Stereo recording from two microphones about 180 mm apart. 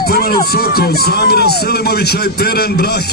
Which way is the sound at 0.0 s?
60° left (ahead or behind).